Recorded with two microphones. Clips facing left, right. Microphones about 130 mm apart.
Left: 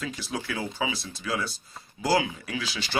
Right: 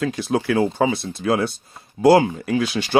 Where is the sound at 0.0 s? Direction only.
55° right (ahead or behind).